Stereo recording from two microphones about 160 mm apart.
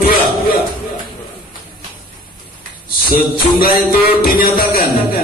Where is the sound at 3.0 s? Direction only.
65° left (ahead or behind).